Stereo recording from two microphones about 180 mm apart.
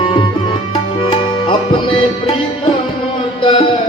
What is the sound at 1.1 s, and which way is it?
Music, 30° left (ahead or behind).